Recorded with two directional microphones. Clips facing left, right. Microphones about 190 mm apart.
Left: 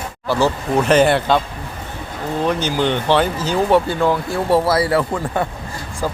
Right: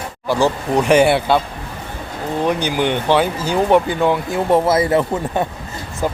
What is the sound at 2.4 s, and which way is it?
Speech, 15° right (ahead or behind).